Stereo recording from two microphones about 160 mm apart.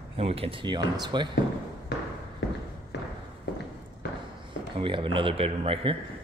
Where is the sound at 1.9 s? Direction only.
90° left.